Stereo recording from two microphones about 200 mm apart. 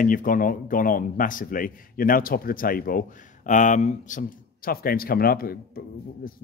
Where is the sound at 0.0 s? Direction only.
45° left (ahead or behind).